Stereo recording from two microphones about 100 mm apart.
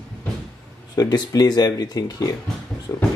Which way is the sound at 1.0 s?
40° left (ahead or behind).